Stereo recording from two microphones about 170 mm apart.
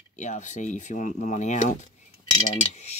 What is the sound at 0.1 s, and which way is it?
Speech, 45° left (ahead or behind).